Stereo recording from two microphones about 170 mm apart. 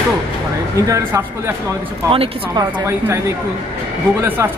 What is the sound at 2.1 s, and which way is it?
Speech, 30° right (ahead or behind).